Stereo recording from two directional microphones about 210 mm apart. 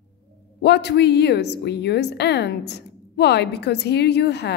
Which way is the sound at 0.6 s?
50° left (ahead or behind).